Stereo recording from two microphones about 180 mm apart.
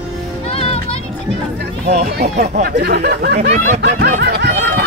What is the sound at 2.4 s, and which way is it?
Speech, 60° right (ahead or behind).